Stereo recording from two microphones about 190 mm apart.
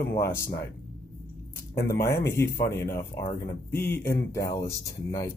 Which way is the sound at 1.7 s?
15° left (ahead or behind).